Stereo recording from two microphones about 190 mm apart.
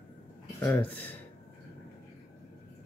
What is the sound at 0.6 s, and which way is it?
Speech, 10° left (ahead or behind).